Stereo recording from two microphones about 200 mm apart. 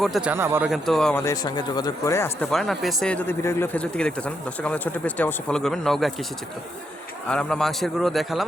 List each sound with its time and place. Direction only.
0.0 s a man's voice: 5° right (ahead or behind)
1.2 s speech: 20° left (ahead or behind)
2.5 s a man's voice: centre (ahead or behind)
7.3 s a man's voice: 5° left (ahead or behind)